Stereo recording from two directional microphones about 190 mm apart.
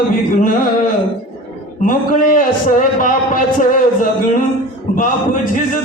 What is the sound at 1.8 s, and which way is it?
Speech, 45° left (ahead or behind).